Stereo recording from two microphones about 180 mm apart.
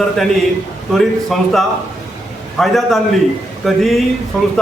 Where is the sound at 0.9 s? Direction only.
Centre (ahead or behind).